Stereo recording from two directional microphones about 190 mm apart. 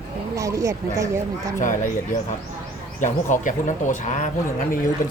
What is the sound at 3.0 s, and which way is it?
Speech, 40° left (ahead or behind).